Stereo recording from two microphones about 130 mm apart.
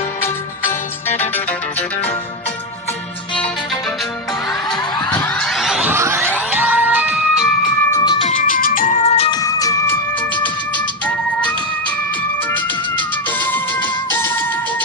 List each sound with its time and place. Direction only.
0.7 s music: 15° left (ahead or behind)
5.1 s a sound: 10° left (ahead or behind)
5.9 s a sound: 15° right (ahead or behind)
6.3 s music: 10° right (ahead or behind)
7.9 s music: 30° left (ahead or behind)
8.2 s music: 75° left (ahead or behind); by 9.3 s 55° left (ahead or behind)
9.3 s music: 25° left (ahead or behind)